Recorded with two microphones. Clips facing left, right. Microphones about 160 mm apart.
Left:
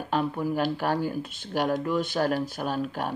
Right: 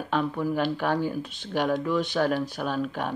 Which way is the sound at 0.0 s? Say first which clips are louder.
Even; 10° left (ahead or behind).